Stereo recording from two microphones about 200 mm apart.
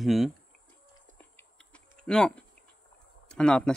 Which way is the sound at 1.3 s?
5° left (ahead or behind).